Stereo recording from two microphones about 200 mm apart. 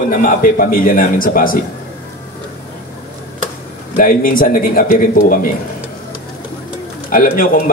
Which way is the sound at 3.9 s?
45° left (ahead or behind).